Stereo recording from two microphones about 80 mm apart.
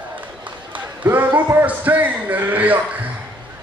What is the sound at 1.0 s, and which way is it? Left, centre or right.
A man's voice, right.